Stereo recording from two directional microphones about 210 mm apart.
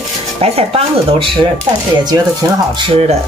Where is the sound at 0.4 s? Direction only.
30° right (ahead or behind).